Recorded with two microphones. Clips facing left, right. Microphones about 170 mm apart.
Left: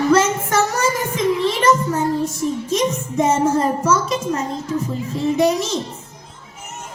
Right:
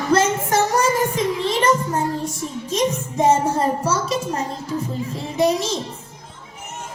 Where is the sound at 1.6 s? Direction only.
35° right (ahead or behind).